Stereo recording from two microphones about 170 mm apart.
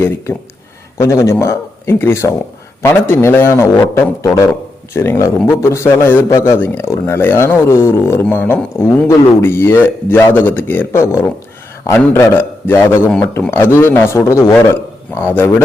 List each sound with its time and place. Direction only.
0.9 s a man's voice: 20° left (ahead or behind)